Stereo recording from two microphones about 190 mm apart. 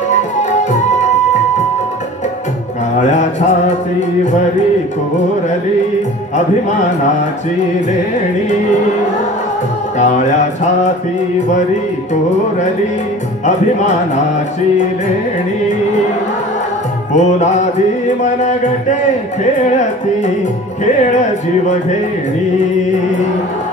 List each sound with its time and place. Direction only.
0.1 s music: 40° left (ahead or behind)
3.0 s mantra: 40° left (ahead or behind)
9.9 s speech: 40° left (ahead or behind)
17.1 s speech: 40° left (ahead or behind)